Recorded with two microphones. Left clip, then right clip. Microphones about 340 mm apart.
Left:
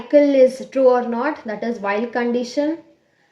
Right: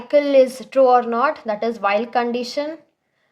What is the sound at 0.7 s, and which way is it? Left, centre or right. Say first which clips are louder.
Speech: right 1 dB; right.